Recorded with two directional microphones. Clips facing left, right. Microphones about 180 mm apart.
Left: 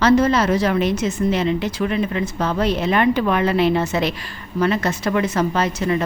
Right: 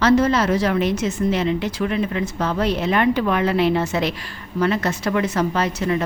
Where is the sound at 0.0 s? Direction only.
20° left (ahead or behind).